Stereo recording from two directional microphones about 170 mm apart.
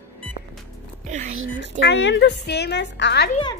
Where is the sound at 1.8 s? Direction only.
90° left.